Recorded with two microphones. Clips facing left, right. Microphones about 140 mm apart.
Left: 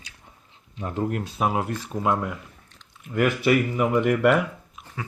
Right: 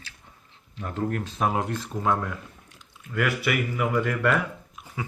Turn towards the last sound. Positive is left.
turn(degrees=-5)  # may be behind; listen again after turning